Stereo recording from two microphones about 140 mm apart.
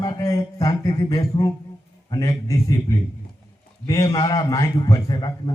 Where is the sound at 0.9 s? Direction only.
30° left (ahead or behind).